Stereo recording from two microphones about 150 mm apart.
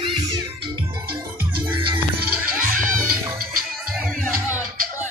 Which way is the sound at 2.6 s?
60° right (ahead or behind).